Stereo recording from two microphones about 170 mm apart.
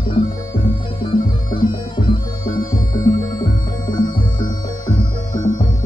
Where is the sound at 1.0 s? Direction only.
30° left (ahead or behind).